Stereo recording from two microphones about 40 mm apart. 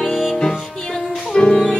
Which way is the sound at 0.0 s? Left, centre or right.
Centre.